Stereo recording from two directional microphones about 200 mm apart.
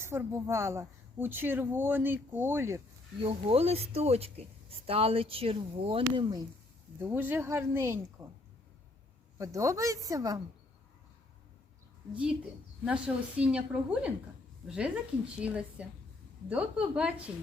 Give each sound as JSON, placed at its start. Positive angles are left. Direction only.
{"t": 0.0, "sound": "speech", "side_deg": -15}
{"t": 3.2, "sound": "speech", "side_deg": -30}
{"t": 7.0, "sound": "speech", "side_deg": -10}
{"t": 9.4, "sound": "speech", "side_deg": -15}
{"t": 12.1, "sound": "a woman's voice", "side_deg": -5}
{"t": 14.7, "sound": "a woman's voice", "side_deg": -5}